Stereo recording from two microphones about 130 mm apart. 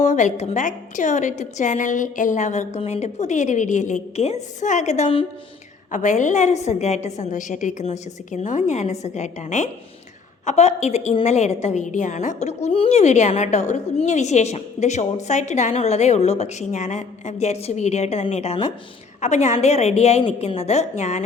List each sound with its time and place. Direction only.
0.0 s a woman's voice: 70° left (ahead or behind); by 5.2 s 55° left (ahead or behind)
5.9 s a woman's voice: 70° left (ahead or behind); by 18.7 s 50° left (ahead or behind)
19.2 s a woman's voice: 65° left (ahead or behind)